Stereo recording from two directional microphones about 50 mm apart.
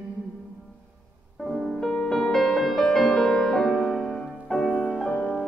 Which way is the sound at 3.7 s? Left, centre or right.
Centre.